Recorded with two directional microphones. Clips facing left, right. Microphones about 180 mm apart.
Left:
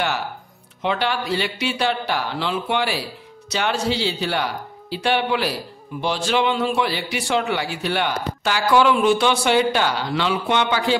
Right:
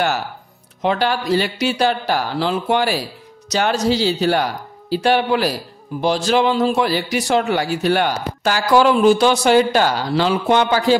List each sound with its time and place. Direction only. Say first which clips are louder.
0.8 s speech: right 4 dB; 40° right (ahead or behind)